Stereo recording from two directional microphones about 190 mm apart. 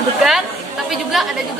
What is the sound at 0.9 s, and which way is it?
Speech, centre (ahead or behind).